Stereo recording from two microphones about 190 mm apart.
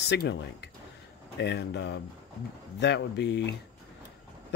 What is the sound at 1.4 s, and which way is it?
Speech, 65° left (ahead or behind).